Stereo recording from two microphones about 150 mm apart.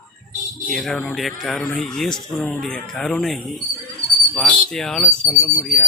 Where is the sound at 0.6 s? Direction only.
5° left (ahead or behind).